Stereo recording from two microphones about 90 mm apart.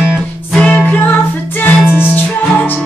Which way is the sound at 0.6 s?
15° left (ahead or behind).